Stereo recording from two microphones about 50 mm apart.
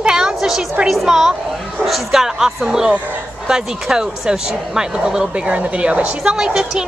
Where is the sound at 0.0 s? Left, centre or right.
Centre.